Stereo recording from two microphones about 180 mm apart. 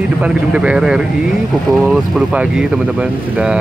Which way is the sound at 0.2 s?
5° right (ahead or behind).